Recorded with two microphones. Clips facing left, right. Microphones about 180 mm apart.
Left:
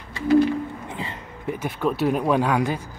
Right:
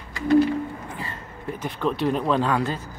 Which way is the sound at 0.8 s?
20° left (ahead or behind).